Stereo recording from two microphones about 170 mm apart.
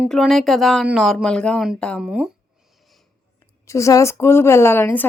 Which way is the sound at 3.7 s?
20° left (ahead or behind).